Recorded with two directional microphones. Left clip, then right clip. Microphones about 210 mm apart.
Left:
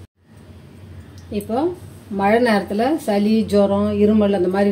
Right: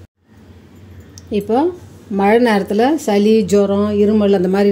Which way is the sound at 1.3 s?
50° right (ahead or behind).